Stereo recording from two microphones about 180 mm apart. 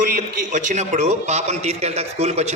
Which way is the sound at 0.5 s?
40° right (ahead or behind).